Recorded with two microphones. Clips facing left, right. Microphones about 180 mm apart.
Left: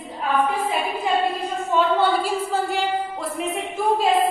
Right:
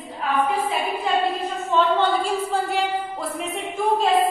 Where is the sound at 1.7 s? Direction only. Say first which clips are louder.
Even; 10° left (ahead or behind).